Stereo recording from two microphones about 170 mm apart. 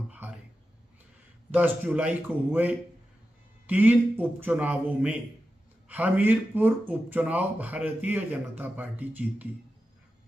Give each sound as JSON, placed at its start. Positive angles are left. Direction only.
{"t": 1.5, "sound": "a man's voice", "side_deg": -10}